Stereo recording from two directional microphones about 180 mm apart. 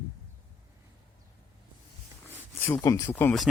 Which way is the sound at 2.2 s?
10° left (ahead or behind).